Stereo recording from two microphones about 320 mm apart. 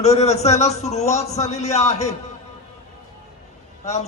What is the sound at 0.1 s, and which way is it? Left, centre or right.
A man's voice, centre.